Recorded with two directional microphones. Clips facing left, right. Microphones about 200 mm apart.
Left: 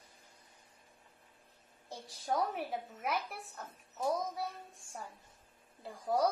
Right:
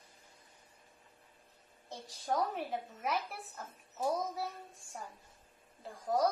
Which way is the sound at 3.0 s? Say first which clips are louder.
Even; centre (ahead or behind).